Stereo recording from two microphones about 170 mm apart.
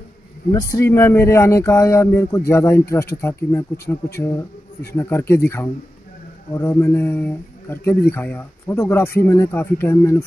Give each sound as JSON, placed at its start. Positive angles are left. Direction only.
{"t": 0.5, "sound": "a man's voice", "side_deg": 20}